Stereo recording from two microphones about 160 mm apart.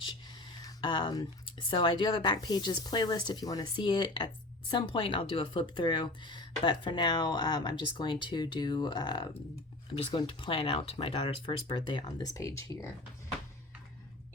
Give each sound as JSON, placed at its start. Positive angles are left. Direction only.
{"t": 0.5, "sound": "a woman's voice", "side_deg": 30}